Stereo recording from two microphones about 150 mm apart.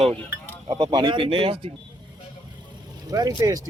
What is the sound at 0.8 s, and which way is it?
Speech, 30° right (ahead or behind).